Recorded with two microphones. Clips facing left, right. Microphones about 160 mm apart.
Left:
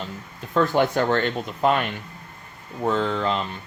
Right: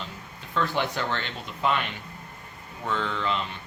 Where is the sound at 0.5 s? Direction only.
45° left (ahead or behind).